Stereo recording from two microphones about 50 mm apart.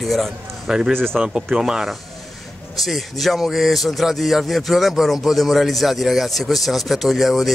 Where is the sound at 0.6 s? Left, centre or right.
Centre.